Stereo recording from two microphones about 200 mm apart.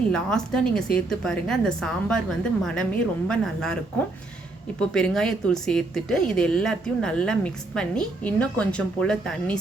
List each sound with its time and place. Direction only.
0.1 s a woman's voice: 5° left (ahead or behind)
4.8 s a woman's voice: 5° left (ahead or behind)